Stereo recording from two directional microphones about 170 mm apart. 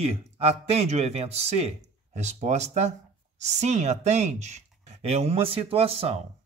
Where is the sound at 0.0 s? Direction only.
35° right (ahead or behind).